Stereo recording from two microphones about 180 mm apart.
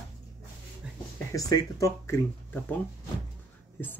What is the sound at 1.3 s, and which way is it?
Speech, 20° left (ahead or behind).